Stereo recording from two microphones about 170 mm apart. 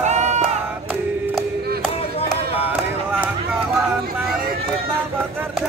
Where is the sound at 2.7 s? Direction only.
10° right (ahead or behind).